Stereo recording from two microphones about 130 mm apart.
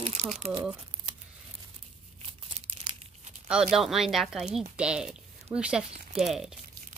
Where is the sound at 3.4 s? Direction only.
5° right (ahead or behind).